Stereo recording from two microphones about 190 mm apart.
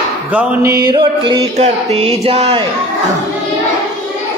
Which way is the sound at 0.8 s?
25° right (ahead or behind).